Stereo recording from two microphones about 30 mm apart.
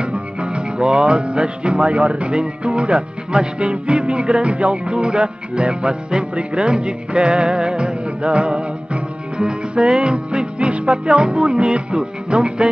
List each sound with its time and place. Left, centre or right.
0.0 s music: right
2.3 s music: right